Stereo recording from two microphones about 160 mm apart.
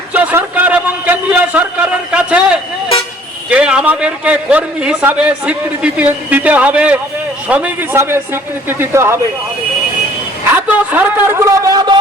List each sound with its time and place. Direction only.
0.1 s a man's voice: 10° right (ahead or behind)
10.5 s speech: 15° right (ahead or behind)